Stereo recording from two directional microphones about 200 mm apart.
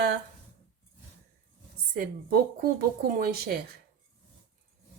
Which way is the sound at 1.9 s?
50° right (ahead or behind).